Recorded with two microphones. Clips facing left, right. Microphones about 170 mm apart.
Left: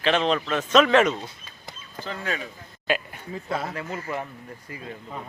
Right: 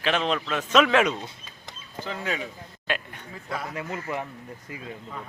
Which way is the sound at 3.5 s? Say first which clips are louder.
Left 4 dB; 25° left (ahead or behind).